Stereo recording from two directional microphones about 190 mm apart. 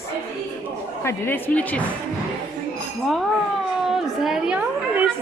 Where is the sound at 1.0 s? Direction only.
10° left (ahead or behind).